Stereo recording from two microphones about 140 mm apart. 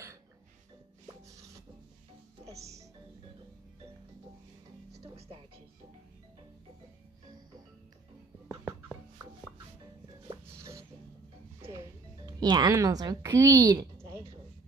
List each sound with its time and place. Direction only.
5.0 s music: 45° right (ahead or behind)
8.5 s music: 20° right (ahead or behind)
10.3 s a sound: 20° right (ahead or behind)
12.3 s a woman's voice: 30° right (ahead or behind)